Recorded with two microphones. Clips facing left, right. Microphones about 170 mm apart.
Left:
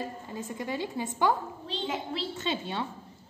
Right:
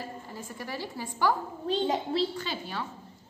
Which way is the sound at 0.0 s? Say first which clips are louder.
Left 3 dB; 20° left (ahead or behind).